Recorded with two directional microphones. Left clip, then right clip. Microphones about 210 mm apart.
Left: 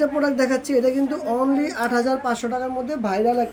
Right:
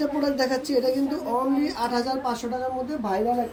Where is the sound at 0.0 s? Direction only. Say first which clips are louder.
Left 4 dB; 60° left (ahead or behind); by 3.2 s 40° left (ahead or behind).